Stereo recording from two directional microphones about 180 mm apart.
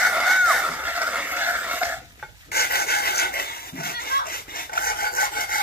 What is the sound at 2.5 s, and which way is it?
Dog, 60° left (ahead or behind).